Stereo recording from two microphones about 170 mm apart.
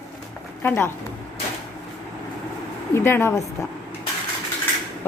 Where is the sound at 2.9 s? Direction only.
15° left (ahead or behind).